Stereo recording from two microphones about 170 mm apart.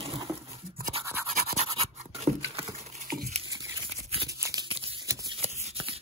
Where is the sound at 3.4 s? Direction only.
20° right (ahead or behind).